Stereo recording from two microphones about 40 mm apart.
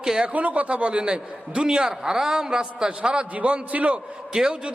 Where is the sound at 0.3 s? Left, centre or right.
Right.